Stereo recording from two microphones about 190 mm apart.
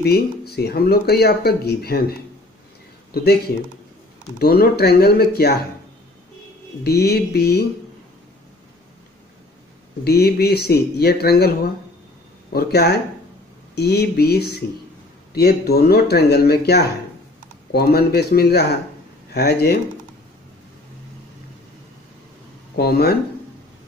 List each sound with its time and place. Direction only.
0.0 s speech: 60° left (ahead or behind)
4.4 s speech: 55° left (ahead or behind)
6.8 s speech: 55° left (ahead or behind)
10.0 s speech: 55° left (ahead or behind)
22.8 s speech: 55° left (ahead or behind)